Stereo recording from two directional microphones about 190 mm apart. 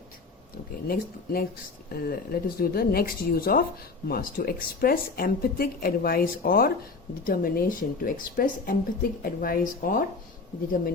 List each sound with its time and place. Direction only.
0.9 s speech: 50° left (ahead or behind)